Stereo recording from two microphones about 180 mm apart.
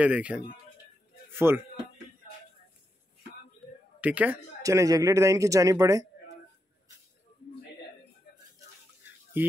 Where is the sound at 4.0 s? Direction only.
10° right (ahead or behind).